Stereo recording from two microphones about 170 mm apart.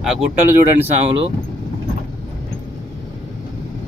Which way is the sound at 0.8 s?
40° right (ahead or behind).